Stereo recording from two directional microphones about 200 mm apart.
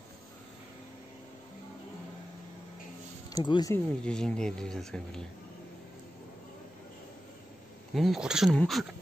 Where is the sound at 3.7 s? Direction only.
5° left (ahead or behind).